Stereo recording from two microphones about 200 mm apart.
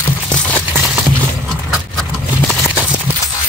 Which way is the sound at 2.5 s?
5° right (ahead or behind).